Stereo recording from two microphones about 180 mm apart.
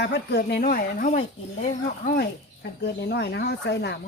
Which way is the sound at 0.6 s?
50° left (ahead or behind).